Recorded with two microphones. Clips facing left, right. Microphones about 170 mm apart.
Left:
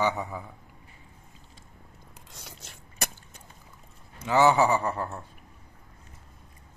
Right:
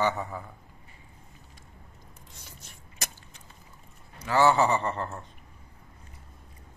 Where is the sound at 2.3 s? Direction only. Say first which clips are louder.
Left 6 dB; 90° left.